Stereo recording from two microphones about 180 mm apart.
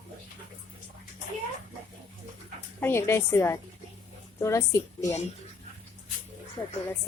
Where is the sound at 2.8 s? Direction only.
15° left (ahead or behind).